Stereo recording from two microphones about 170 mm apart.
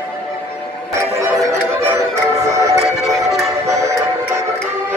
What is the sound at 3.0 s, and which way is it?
Music, centre (ahead or behind).